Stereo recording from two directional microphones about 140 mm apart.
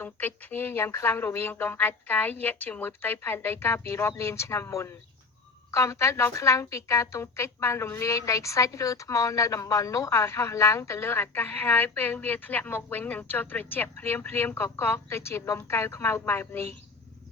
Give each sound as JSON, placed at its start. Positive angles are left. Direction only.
{"t": 0.0, "sound": "a woman's voice", "side_deg": 15}